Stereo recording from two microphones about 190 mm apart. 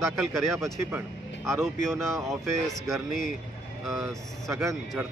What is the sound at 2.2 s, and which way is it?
Speech, centre (ahead or behind).